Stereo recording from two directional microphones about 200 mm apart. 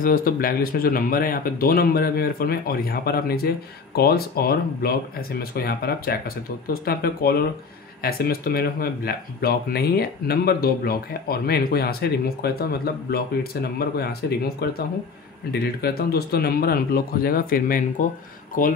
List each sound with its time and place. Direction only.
0.0 s speech: 45° left (ahead or behind)